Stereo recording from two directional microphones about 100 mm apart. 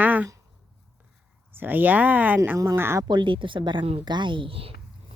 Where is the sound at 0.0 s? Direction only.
15° right (ahead or behind).